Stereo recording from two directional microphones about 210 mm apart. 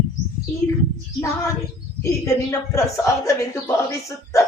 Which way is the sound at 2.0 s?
15° left (ahead or behind).